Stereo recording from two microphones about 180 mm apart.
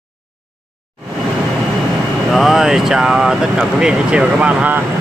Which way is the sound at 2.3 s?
Centre (ahead or behind).